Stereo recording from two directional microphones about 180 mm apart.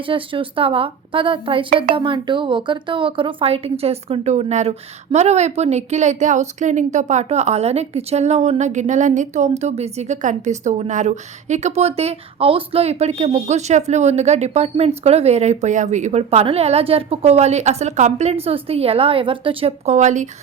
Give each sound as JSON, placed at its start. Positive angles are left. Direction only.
{"t": 0.0, "sound": "a woman's voice", "side_deg": -30}